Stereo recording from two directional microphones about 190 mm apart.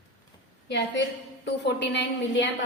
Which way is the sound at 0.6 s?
65° left (ahead or behind).